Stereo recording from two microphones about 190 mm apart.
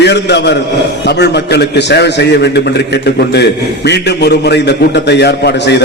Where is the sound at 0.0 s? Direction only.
65° left (ahead or behind).